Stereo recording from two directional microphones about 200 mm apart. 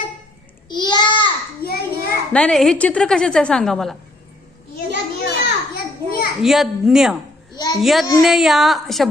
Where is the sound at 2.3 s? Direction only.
5° left (ahead or behind).